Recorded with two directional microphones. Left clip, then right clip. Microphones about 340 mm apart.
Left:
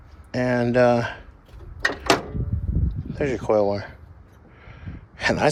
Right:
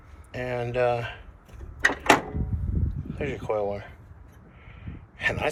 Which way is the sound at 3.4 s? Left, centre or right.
Left.